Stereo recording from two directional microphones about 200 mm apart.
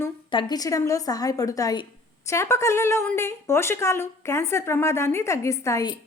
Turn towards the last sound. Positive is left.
turn(degrees=20)  # may be behind; listen again after turning